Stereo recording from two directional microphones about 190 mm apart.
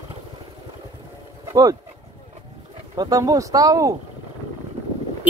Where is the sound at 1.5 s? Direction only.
20° right (ahead or behind).